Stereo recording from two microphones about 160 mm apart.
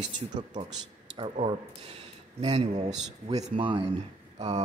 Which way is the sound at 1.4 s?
40° right (ahead or behind).